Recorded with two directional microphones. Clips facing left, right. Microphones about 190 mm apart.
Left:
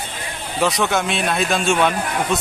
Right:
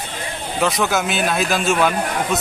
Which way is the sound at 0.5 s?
Centre (ahead or behind).